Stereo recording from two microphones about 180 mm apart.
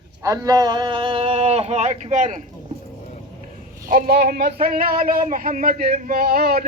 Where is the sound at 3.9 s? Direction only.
55° right (ahead or behind).